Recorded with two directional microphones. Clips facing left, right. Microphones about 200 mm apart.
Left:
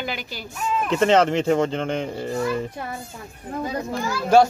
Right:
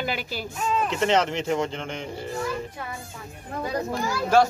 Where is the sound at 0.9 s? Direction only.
55° left (ahead or behind).